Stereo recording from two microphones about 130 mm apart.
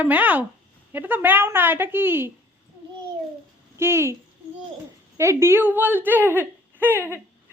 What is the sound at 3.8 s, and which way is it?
A woman's voice, 20° right (ahead or behind).